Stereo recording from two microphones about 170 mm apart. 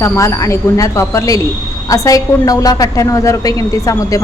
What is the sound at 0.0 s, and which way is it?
A woman's voice, 15° left (ahead or behind).